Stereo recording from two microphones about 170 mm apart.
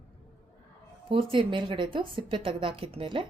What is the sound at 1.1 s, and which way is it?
Speech, 30° right (ahead or behind).